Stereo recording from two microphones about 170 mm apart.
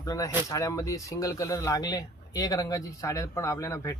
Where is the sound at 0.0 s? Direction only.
20° left (ahead or behind).